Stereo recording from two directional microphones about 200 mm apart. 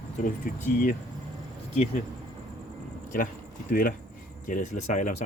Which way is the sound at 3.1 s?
45° left (ahead or behind).